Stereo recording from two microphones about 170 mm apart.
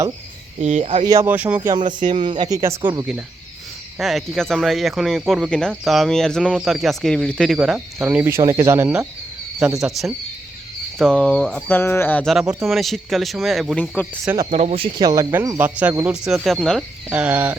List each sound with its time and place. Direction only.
0.6 s speech: 40° right (ahead or behind)
1.0 s speech: 20° right (ahead or behind)
1.7 s speech: 25° right (ahead or behind)
3.9 s speech: centre (ahead or behind)
8.4 s speech: 20° right (ahead or behind)
9.6 s speech: 5° right (ahead or behind)
14.5 s speech: 40° right (ahead or behind)
14.9 s speech: 20° right (ahead or behind); by 16.8 s centre (ahead or behind)
17.1 s speech: 10° right (ahead or behind)